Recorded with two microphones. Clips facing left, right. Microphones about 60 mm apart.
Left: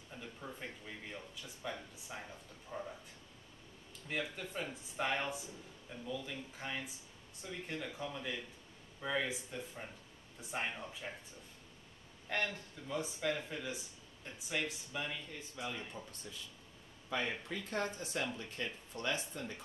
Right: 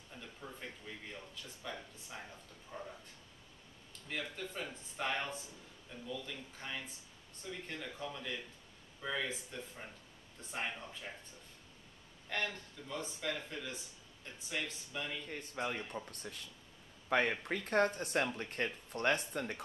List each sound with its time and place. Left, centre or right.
0.2 s speech: centre
4.1 s speech: centre
12.3 s a man's voice: centre
15.2 s speech: right
16.1 s speech: right